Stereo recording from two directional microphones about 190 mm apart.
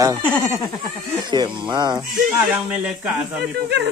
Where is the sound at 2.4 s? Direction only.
Centre (ahead or behind).